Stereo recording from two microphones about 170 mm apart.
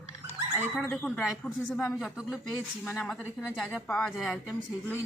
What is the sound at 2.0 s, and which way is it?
Speech, 5° right (ahead or behind).